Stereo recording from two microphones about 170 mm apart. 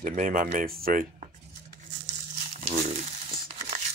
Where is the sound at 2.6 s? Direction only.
40° right (ahead or behind).